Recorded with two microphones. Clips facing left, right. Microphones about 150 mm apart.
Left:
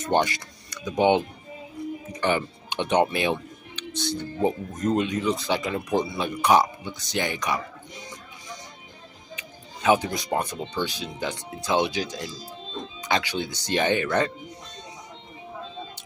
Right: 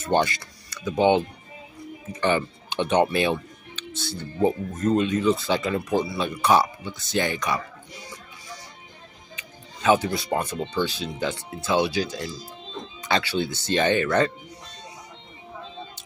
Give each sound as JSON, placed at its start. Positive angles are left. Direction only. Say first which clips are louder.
{"t": 0.0, "sound": "speech", "louder": "right 1 dB", "side_deg": 15}
{"t": 9.4, "sound": "speech", "louder": "even", "side_deg": 15}